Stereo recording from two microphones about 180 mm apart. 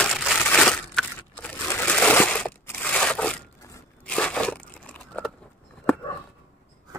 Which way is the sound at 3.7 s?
5° left (ahead or behind).